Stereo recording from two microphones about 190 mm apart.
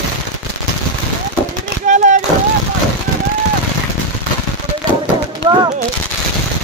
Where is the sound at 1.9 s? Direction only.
40° right (ahead or behind).